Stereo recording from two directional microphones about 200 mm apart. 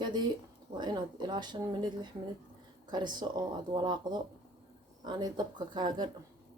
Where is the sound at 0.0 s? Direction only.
20° right (ahead or behind).